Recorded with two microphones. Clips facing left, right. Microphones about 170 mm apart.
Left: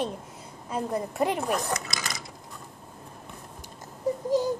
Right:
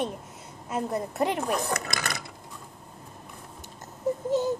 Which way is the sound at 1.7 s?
60° right (ahead or behind).